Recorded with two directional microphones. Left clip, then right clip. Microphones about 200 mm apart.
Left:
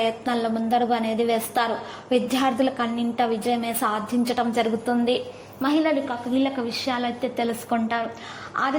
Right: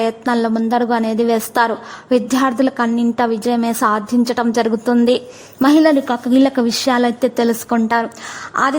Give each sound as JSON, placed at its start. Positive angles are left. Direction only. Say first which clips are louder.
{"t": 0.0, "sound": "a woman's voice", "louder": "right 6 dB", "side_deg": -40}